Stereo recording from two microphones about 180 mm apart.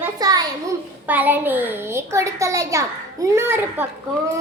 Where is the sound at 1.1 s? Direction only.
10° right (ahead or behind).